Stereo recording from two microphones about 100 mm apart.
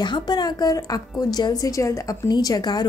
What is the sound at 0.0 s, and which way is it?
A woman's voice, 45° left (ahead or behind).